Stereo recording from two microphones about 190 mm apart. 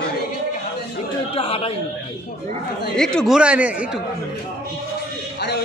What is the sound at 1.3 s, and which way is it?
Speech, 30° left (ahead or behind).